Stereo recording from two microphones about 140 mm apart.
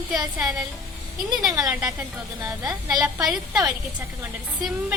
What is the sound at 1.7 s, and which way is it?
Speech, 5° right (ahead or behind).